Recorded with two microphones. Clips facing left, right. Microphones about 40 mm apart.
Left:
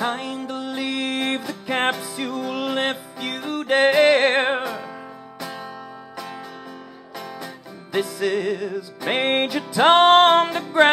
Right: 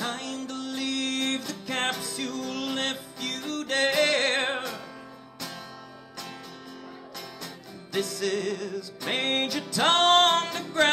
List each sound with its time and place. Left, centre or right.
0.0 s music: centre
7.9 s music: centre